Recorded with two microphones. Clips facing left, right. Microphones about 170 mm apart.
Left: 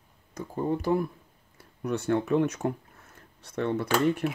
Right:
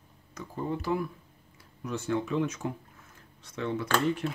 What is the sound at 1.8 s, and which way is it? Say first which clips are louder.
Speech: left 4 dB; 65° left (ahead or behind).